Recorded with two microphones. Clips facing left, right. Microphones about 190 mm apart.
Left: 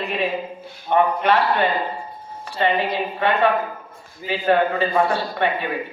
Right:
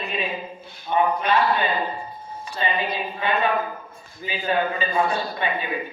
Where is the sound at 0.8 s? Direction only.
70° left (ahead or behind).